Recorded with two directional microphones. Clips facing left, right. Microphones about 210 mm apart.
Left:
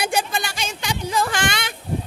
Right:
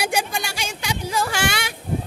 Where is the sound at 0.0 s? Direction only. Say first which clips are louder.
Left 1 dB; 10° right (ahead or behind).